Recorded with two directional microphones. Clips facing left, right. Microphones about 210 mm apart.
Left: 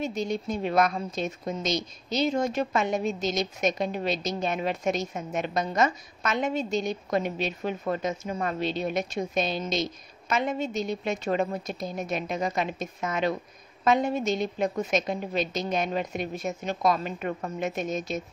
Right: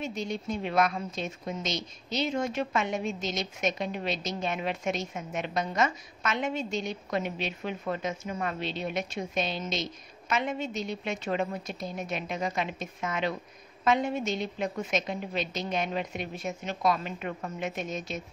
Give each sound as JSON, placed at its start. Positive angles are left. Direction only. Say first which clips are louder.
{"t": 0.0, "sound": "a woman's voice", "louder": "left 4 dB", "side_deg": 40}